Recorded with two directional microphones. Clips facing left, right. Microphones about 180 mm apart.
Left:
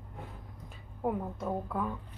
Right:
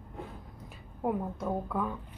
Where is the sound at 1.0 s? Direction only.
Centre (ahead or behind).